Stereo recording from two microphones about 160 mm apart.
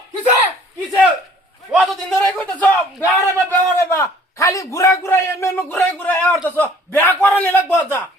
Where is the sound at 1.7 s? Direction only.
Centre (ahead or behind).